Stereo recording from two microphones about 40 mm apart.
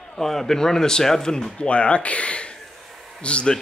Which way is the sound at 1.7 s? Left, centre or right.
Left.